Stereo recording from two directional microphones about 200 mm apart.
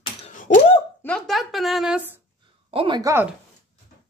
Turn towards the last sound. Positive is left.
turn(degrees=-20)  # may be behind; listen again after turning